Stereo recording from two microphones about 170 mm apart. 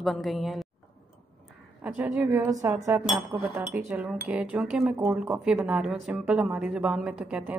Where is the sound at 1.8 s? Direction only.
10° right (ahead or behind).